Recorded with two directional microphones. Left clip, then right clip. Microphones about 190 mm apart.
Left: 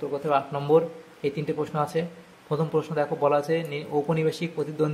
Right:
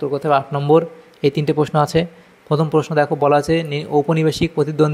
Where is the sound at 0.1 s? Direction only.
40° right (ahead or behind).